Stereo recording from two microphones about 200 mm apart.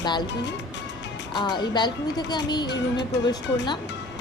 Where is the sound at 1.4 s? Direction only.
20° left (ahead or behind).